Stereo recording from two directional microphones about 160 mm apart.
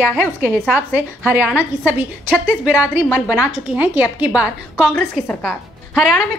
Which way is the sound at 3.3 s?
5° right (ahead or behind).